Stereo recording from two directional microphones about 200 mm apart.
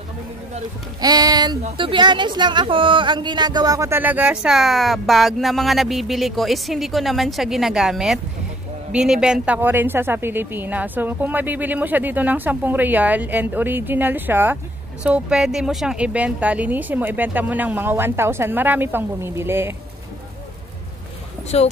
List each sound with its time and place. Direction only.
1.0 s a woman's voice: 20° right (ahead or behind)
21.5 s speech: 30° left (ahead or behind)